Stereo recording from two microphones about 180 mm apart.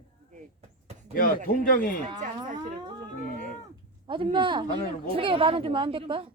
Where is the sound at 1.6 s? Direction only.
50° left (ahead or behind).